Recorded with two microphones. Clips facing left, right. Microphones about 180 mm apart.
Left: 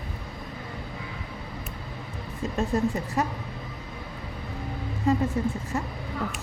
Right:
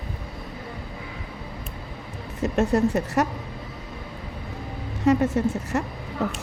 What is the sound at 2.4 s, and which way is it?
Speech, 75° right (ahead or behind).